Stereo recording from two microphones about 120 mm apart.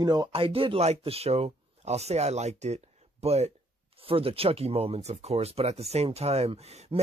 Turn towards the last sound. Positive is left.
turn(degrees=-60)  # may be behind; listen again after turning